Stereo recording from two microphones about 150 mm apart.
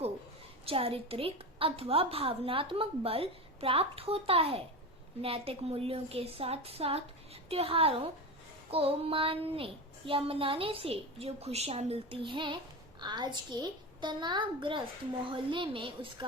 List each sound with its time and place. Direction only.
0.6 s a woman's voice: 40° right (ahead or behind)